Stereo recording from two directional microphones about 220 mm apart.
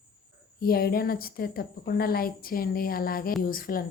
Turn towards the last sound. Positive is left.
turn(degrees=40)  # may be behind; listen again after turning